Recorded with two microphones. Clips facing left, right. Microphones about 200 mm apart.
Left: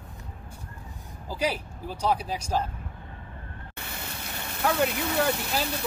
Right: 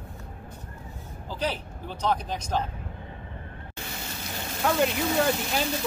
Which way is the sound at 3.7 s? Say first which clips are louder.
Right 1 dB; 60° left (ahead or behind).